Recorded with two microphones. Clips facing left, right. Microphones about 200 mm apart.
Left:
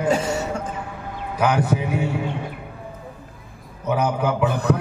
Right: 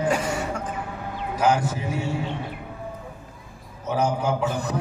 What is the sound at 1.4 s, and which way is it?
Speech, 60° left (ahead or behind).